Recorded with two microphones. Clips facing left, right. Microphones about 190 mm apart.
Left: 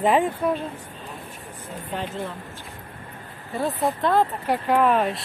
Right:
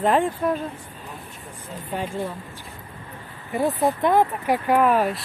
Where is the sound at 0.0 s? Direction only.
5° left (ahead or behind).